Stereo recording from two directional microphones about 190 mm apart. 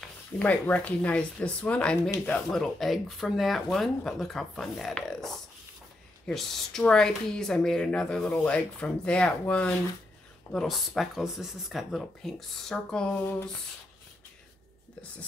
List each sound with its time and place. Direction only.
0.0 s speech: 10° left (ahead or behind)